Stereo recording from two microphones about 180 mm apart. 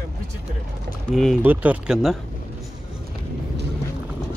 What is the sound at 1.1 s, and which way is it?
Speech, centre (ahead or behind).